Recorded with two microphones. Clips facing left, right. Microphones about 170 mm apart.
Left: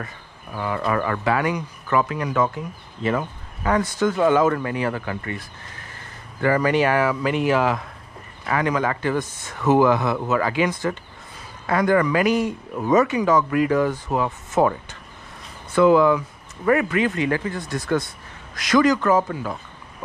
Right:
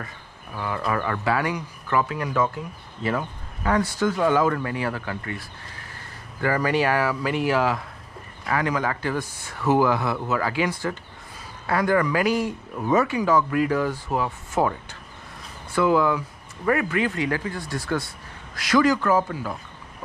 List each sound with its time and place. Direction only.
0.7 s speech: 20° left (ahead or behind)
3.6 s speech: 20° left (ahead or behind)
6.4 s a man's voice: 20° left (ahead or behind)